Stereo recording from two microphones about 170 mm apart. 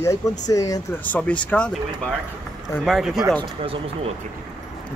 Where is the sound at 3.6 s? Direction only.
30° right (ahead or behind).